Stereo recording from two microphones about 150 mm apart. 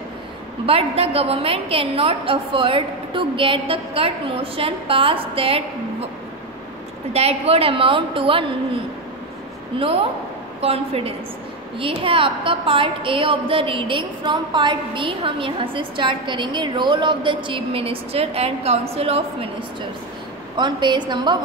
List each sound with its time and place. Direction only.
0.7 s a woman's voice: 40° right (ahead or behind)
7.1 s a woman's voice: 45° right (ahead or behind)
9.8 s a woman's voice: 40° right (ahead or behind)
20.5 s a woman's voice: 30° right (ahead or behind)